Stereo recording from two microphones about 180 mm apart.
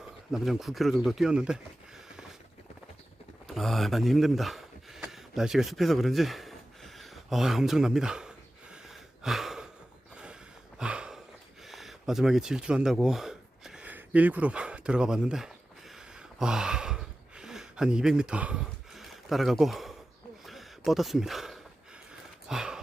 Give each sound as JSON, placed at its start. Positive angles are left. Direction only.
{"t": 0.3, "sound": "speech", "side_deg": 0}
{"t": 3.4, "sound": "speech", "side_deg": 0}
{"t": 8.7, "sound": "gasp", "side_deg": 0}
{"t": 10.8, "sound": "a sound", "side_deg": -5}